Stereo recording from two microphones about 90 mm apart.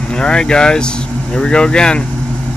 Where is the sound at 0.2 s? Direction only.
10° left (ahead or behind).